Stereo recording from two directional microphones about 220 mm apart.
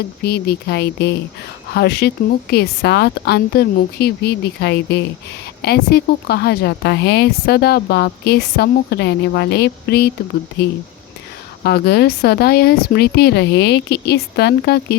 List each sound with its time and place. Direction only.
0.2 s speech: 45° left (ahead or behind)
11.6 s speech: 45° left (ahead or behind)